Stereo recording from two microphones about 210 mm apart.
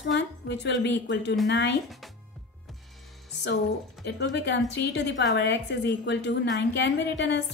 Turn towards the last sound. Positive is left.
turn(degrees=55)  # may be behind; listen again after turning